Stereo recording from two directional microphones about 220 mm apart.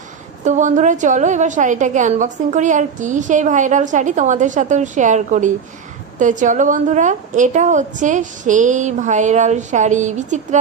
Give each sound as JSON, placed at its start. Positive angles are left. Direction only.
{"t": 0.4, "sound": "a woman's voice", "side_deg": -35}